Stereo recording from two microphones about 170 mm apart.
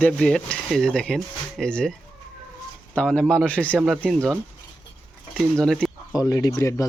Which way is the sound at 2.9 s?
5° left (ahead or behind).